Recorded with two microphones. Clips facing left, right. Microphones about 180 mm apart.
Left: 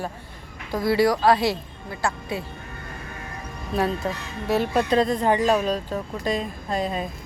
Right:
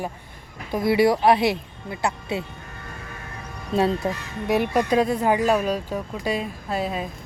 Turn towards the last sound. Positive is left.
turn(degrees=-5)  # may be behind; listen again after turning